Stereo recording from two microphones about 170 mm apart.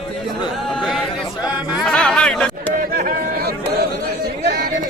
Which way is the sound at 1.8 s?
5° left (ahead or behind).